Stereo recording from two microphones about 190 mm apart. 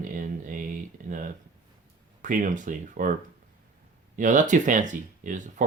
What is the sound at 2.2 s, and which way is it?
Speech, 45° right (ahead or behind).